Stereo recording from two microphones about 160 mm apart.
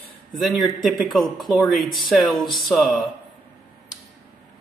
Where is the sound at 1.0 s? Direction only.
Centre (ahead or behind).